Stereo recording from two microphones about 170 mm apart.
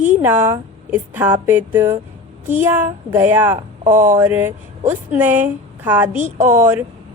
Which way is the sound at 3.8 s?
50° right (ahead or behind).